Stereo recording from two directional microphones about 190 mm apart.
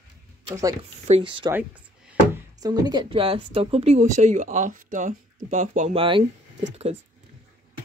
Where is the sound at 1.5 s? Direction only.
10° right (ahead or behind).